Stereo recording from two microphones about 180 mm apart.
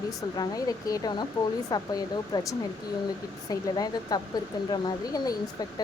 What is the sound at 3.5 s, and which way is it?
A woman's voice, 20° left (ahead or behind).